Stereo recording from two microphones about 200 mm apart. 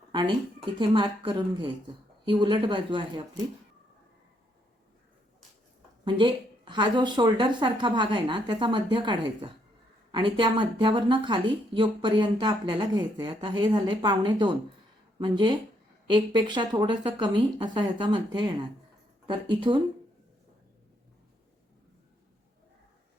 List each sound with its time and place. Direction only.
0.1 s speech: 25° right (ahead or behind)
6.1 s speech: 25° right (ahead or behind)